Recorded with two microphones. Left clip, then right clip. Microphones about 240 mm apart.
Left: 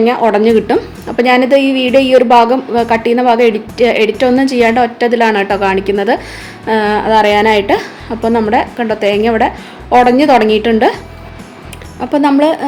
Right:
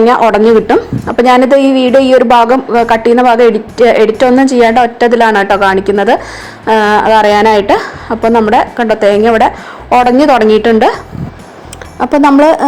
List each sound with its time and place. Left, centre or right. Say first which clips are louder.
0.0 s a woman's voice: right 4 dB; centre